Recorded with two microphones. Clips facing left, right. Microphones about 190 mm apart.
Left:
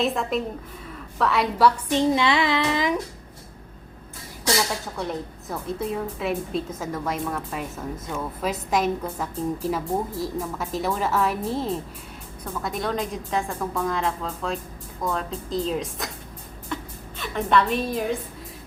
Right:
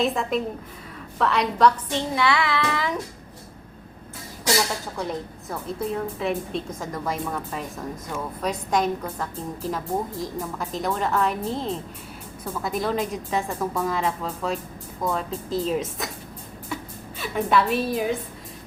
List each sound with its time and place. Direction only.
0.0 s a woman's voice: centre (ahead or behind)
2.0 s child singing: 20° left (ahead or behind)
4.9 s a woman's voice: centre (ahead or behind)
17.2 s a woman's voice: 5° right (ahead or behind)